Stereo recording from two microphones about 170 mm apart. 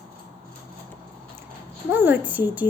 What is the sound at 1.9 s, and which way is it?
Speech, 10° right (ahead or behind).